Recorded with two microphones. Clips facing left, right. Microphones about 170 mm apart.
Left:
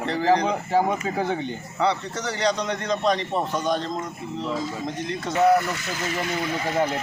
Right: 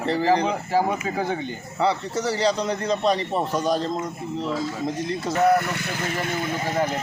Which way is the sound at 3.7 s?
35° right (ahead or behind).